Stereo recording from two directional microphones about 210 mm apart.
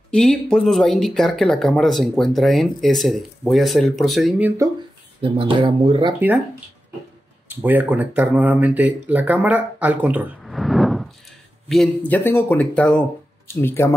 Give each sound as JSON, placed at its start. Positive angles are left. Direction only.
{"t": 0.1, "sound": "speech", "side_deg": 5}
{"t": 5.2, "sound": "speech", "side_deg": -25}
{"t": 6.1, "sound": "speech", "side_deg": -10}
{"t": 7.4, "sound": "speech", "side_deg": -10}